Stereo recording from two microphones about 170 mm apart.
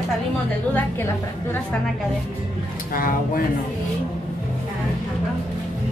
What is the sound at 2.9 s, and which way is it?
Speech, 55° left (ahead or behind).